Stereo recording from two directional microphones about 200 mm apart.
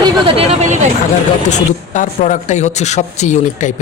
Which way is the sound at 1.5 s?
40° left (ahead or behind).